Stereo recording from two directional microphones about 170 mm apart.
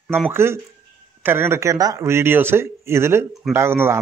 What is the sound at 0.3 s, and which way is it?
Speech, 15° right (ahead or behind).